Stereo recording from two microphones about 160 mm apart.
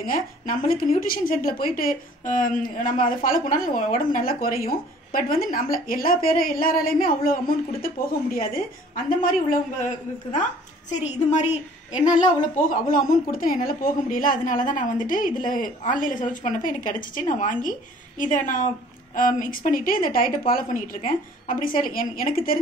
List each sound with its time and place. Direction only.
0.0 s a woman's voice: 65° left (ahead or behind)